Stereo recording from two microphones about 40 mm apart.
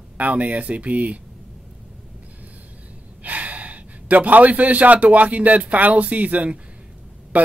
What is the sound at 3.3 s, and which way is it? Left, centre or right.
Speech, right.